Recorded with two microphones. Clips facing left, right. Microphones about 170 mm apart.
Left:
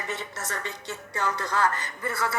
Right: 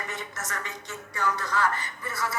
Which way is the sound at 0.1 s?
30° left (ahead or behind).